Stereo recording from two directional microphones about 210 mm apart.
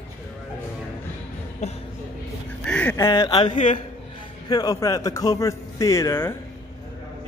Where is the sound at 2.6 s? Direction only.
5° left (ahead or behind).